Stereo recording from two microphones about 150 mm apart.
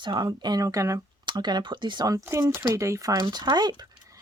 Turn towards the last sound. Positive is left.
turn(degrees=-30)  # may be behind; listen again after turning